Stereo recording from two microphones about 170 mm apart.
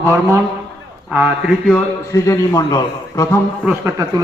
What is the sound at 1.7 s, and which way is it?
A man's voice, 15° left (ahead or behind).